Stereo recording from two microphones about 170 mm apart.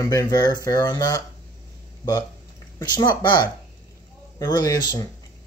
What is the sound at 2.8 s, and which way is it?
A man's voice, 25° left (ahead or behind).